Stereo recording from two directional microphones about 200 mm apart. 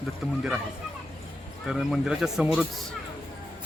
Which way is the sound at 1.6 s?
Centre (ahead or behind).